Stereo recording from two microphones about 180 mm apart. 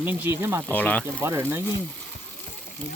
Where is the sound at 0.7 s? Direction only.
10° left (ahead or behind).